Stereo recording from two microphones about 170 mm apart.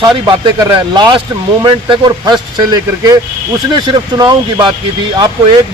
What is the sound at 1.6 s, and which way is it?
A man's voice, 30° right (ahead or behind).